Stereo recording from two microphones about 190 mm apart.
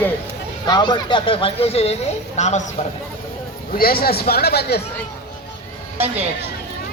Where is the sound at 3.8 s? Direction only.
50° left (ahead or behind).